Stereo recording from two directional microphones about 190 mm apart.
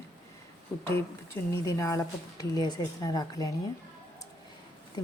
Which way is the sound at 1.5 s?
15° left (ahead or behind).